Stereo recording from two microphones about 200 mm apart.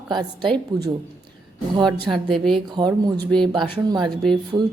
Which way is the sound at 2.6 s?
20° right (ahead or behind).